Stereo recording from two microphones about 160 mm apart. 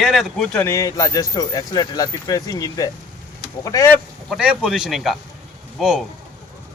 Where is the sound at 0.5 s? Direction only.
15° left (ahead or behind).